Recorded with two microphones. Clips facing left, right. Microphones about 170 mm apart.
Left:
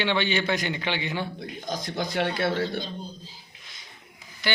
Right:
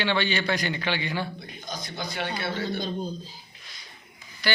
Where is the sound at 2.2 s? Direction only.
90° left.